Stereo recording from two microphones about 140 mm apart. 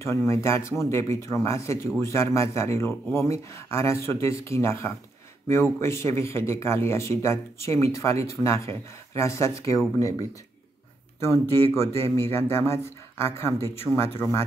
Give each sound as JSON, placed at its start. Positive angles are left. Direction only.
{"t": 0.0, "sound": "a man's voice", "side_deg": 20}
{"t": 11.1, "sound": "a man's voice", "side_deg": 20}